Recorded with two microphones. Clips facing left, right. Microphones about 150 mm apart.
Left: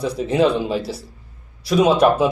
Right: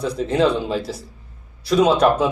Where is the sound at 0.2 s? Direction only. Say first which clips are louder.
Left 1 dB; 10° left (ahead or behind).